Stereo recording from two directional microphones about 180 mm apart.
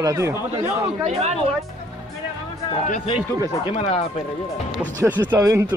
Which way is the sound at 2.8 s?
45° left (ahead or behind).